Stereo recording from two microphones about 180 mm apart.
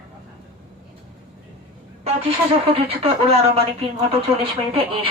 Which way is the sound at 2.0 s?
30° right (ahead or behind).